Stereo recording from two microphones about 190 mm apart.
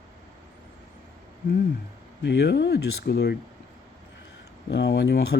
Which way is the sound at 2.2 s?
65° left (ahead or behind).